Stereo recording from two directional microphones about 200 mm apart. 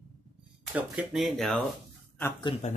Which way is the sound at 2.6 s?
35° left (ahead or behind).